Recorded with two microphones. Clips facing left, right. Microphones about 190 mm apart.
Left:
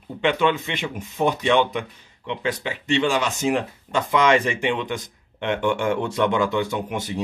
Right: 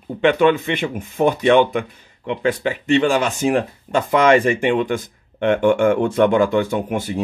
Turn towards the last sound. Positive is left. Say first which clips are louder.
# right 5 dB
turn(degrees=-50)  # may be behind; listen again after turning